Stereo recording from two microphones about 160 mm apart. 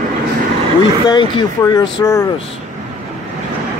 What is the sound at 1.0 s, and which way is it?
Speech, 25° left (ahead or behind).